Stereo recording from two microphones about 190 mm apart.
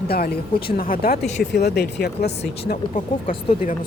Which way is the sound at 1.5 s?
60° left (ahead or behind).